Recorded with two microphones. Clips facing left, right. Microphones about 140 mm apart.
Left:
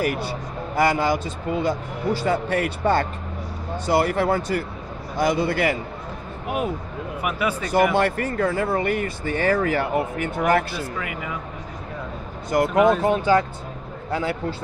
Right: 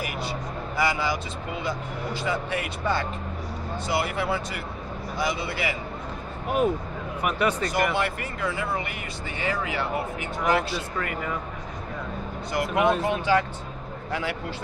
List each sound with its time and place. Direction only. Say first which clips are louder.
0.7 s speech: left 6 dB; 50° left (ahead or behind)
6.4 s speech: right 2 dB; 5° left (ahead or behind)
8.0 s speech: left 7 dB; 45° left (ahead or behind)
10.8 s speech: left 1 dB; 5° left (ahead or behind)
12.6 s speech: left 4 dB; centre (ahead or behind)
13.0 s speech: left 4 dB; 40° left (ahead or behind)